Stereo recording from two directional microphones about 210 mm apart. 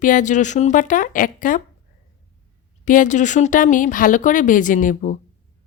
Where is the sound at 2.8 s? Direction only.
40° left (ahead or behind).